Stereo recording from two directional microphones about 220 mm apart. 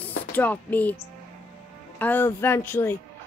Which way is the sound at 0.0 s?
5° left (ahead or behind).